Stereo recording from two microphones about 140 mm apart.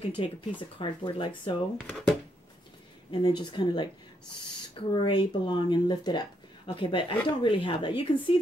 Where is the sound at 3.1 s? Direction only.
30° left (ahead or behind).